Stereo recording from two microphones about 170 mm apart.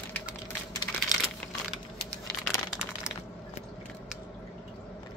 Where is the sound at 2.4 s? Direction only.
5° right (ahead or behind).